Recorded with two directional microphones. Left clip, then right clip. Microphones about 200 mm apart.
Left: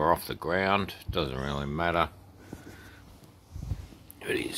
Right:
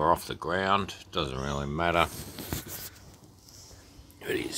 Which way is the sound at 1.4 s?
5° right (ahead or behind).